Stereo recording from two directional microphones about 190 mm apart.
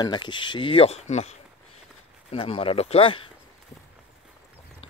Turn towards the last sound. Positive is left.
turn(degrees=30)  # may be behind; listen again after turning